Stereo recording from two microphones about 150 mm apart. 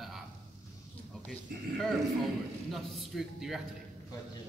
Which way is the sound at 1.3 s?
Centre (ahead or behind).